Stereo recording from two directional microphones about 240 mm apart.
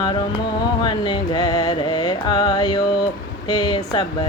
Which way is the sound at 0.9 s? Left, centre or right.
Centre.